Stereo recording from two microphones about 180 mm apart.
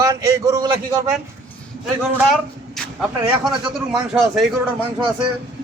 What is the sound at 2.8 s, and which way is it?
Vehicle, centre (ahead or behind).